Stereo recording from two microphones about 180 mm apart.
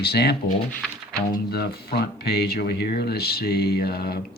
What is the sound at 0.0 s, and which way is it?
Speech, 60° left (ahead or behind).